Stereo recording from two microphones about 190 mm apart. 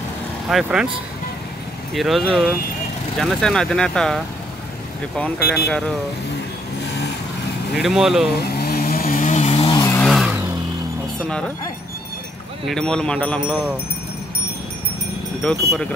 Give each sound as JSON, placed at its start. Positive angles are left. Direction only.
{"t": 0.5, "sound": "speech", "side_deg": -5}
{"t": 2.0, "sound": "speech", "side_deg": 0}
{"t": 6.9, "sound": "vehicle", "side_deg": 65}
{"t": 7.8, "sound": "speech", "side_deg": 0}
{"t": 8.4, "sound": "chainsaw", "side_deg": 55}
{"t": 10.0, "sound": "vehicle", "side_deg": -5}
{"t": 12.6, "sound": "speech", "side_deg": 5}
{"t": 15.4, "sound": "speech", "side_deg": 5}